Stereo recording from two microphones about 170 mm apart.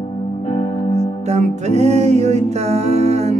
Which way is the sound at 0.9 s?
40° right (ahead or behind).